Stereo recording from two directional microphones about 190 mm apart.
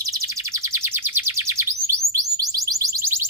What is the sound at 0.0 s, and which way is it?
Chirp, 20° right (ahead or behind).